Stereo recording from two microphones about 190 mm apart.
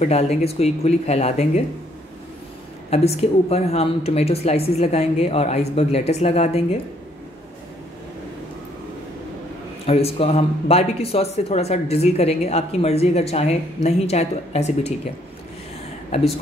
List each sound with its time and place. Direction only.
0.0 s speech: 35° left (ahead or behind)
2.9 s speech: 35° left (ahead or behind)
9.8 s speech: 30° left (ahead or behind)